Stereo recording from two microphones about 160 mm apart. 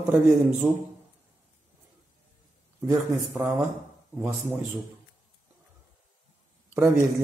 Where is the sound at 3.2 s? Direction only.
5° right (ahead or behind).